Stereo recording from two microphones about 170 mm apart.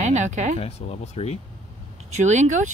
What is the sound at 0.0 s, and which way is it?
Speech, 45° right (ahead or behind).